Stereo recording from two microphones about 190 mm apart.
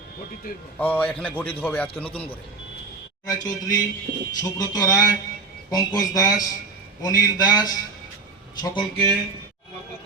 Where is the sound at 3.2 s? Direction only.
20° left (ahead or behind).